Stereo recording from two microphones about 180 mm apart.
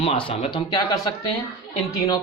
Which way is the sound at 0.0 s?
30° left (ahead or behind).